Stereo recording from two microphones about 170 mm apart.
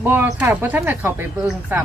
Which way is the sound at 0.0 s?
10° right (ahead or behind).